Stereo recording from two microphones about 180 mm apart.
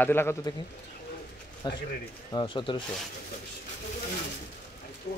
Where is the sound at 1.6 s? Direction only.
25° left (ahead or behind).